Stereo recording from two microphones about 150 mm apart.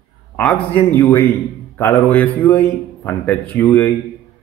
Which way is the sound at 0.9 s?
20° left (ahead or behind).